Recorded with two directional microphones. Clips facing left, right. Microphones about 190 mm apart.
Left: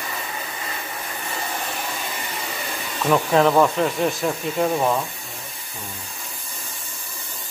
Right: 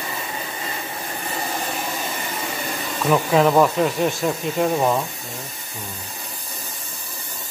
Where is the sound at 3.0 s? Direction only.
5° right (ahead or behind).